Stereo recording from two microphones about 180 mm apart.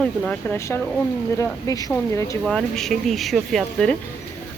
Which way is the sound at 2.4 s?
Centre (ahead or behind).